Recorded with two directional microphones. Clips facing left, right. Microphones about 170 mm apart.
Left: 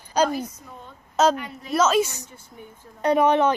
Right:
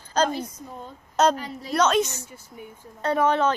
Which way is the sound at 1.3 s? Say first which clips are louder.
Even; 35° right (ahead or behind).